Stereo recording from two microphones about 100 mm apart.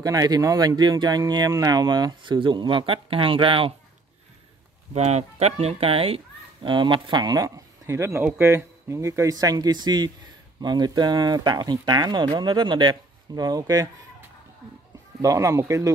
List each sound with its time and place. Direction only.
0.0 s speech: 35° right (ahead or behind); by 3.7 s 60° right (ahead or behind)
4.9 s speech: 90° right; by 6.2 s 70° right (ahead or behind)
6.6 s speech: 50° right (ahead or behind)
15.2 s speech: 35° right (ahead or behind)